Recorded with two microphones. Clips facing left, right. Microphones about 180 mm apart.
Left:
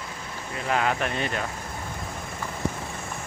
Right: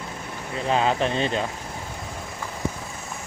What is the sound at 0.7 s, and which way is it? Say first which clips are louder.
Speech: right 3 dB; 25° right (ahead or behind).